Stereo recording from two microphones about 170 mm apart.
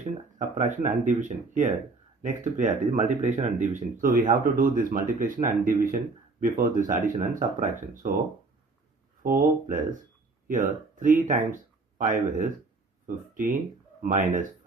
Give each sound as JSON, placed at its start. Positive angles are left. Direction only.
{"t": 0.3, "sound": "speech", "side_deg": -45}
{"t": 9.2, "sound": "speech", "side_deg": -55}